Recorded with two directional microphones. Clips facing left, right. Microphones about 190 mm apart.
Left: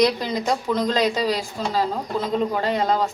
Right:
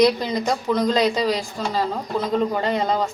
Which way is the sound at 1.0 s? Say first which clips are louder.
Right 1 dB; 5° left (ahead or behind).